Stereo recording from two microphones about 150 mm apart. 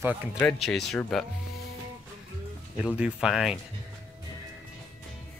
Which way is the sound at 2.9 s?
5° right (ahead or behind).